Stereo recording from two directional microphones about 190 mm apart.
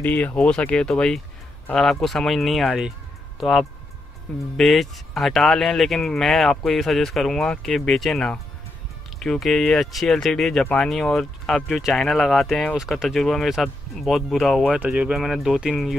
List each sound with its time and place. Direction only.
0.0 s speech: 10° left (ahead or behind)